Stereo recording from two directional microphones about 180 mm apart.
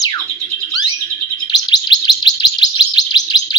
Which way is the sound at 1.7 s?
20° left (ahead or behind).